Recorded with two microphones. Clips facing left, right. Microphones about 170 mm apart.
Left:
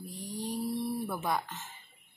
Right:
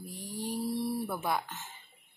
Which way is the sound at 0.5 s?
5° right (ahead or behind).